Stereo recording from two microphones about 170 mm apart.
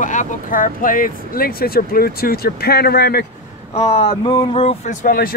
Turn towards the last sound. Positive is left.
turn(degrees=60)  # may be behind; listen again after turning